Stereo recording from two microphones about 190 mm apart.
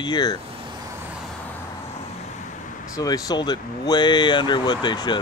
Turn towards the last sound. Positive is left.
turn(degrees=25)  # may be behind; listen again after turning